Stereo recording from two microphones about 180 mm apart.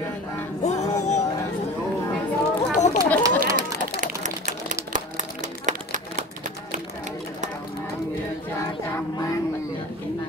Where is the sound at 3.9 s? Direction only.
45° right (ahead or behind).